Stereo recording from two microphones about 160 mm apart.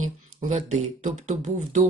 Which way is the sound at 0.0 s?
50° right (ahead or behind).